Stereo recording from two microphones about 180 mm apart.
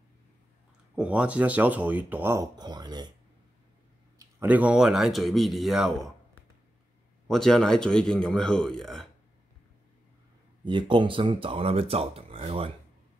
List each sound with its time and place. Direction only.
0.9 s speech: 5° right (ahead or behind); by 3.1 s 25° right (ahead or behind)
4.2 s speech: 10° right (ahead or behind)
7.2 s speech: 5° left (ahead or behind)
10.6 s speech: 25° right (ahead or behind)